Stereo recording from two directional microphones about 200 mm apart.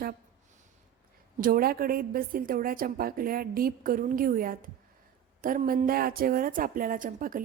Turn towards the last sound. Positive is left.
turn(degrees=-45)  # may be behind; listen again after turning